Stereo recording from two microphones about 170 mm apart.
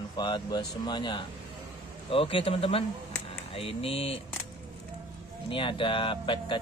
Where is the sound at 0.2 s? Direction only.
25° left (ahead or behind).